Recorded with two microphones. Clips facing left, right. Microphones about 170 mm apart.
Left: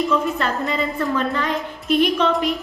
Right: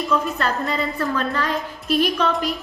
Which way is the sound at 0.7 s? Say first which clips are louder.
Left 1 dB; 20° left (ahead or behind).